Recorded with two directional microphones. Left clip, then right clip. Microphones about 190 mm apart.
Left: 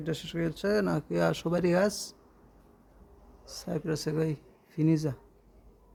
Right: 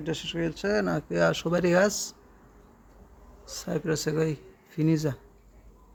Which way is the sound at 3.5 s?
Centre (ahead or behind).